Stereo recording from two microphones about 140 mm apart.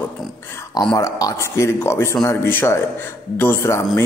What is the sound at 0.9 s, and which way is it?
A man's voice, 25° left (ahead or behind).